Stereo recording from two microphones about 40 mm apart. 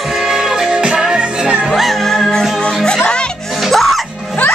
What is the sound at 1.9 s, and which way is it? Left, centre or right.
Music, centre.